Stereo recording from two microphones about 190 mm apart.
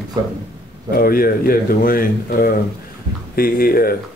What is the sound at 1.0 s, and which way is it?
Speech, 50° left (ahead or behind).